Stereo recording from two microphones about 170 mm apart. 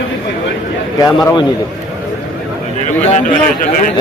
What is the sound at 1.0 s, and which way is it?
Speech, 20° left (ahead or behind).